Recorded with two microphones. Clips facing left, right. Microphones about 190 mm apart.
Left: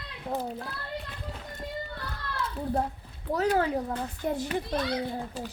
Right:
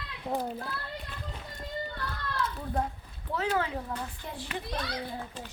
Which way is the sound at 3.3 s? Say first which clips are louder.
Left 5 dB; 40° left (ahead or behind).